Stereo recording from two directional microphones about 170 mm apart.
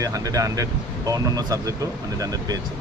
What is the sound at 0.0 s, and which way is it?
Speech, 20° right (ahead or behind).